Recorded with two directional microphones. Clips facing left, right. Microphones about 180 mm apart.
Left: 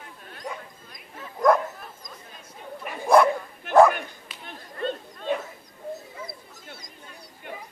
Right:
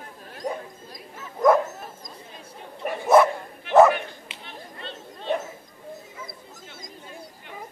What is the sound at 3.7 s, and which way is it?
Bow-wow, 45° left (ahead or behind).